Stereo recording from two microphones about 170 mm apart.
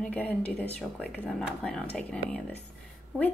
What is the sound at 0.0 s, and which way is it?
Speech, 5° left (ahead or behind).